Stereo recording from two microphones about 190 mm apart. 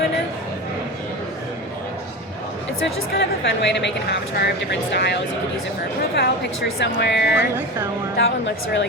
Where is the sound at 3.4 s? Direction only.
65° left (ahead or behind).